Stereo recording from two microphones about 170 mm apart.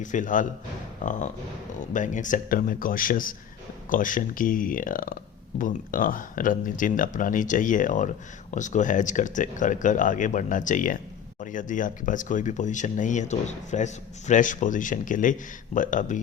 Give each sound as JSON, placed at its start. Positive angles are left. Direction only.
{"t": 0.0, "sound": "speech", "side_deg": 50}